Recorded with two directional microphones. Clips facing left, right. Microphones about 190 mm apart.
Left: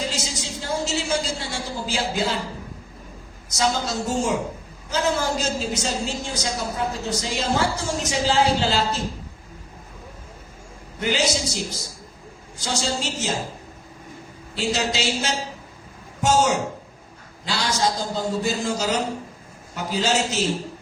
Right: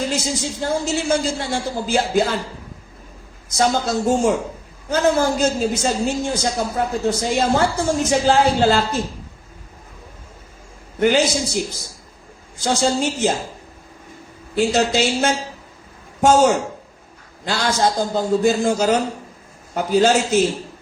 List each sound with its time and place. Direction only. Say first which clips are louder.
0.6 s a man's voice: right 4 dB; 55° right (ahead or behind)
3.6 s a woman's voice: right 5 dB; 55° right (ahead or behind)
11.0 s a man's voice: right 6 dB; 55° right (ahead or behind)
12.6 s a woman's voice: right 8 dB; 55° right (ahead or behind)
14.5 s a man's voice: right 7 dB; 55° right (ahead or behind)